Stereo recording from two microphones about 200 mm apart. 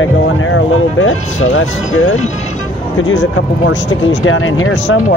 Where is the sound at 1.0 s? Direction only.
80° left.